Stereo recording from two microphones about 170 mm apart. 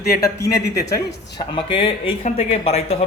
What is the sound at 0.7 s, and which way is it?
Speech, 20° left (ahead or behind).